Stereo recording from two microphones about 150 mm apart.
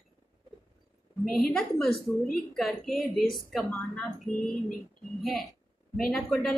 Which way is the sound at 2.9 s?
75° left (ahead or behind).